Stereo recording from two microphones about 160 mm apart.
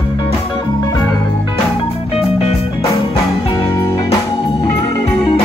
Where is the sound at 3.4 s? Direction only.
20° left (ahead or behind).